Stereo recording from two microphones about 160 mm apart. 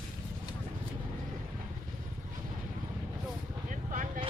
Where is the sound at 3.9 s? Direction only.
55° right (ahead or behind).